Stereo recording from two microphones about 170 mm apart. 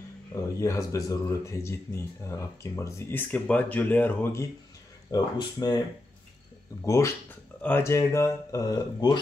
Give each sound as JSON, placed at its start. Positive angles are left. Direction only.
{"t": 0.3, "sound": "speech", "side_deg": 20}